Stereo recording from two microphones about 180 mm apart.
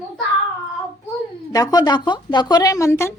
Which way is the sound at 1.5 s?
20° left (ahead or behind).